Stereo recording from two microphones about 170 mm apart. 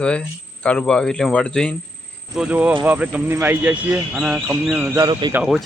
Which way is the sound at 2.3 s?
5° right (ahead or behind).